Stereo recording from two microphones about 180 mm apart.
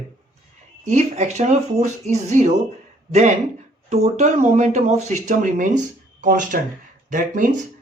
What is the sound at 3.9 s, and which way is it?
Speech, 40° right (ahead or behind).